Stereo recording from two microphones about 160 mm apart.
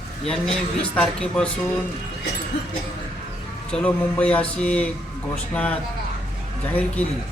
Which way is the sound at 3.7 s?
5° left (ahead or behind).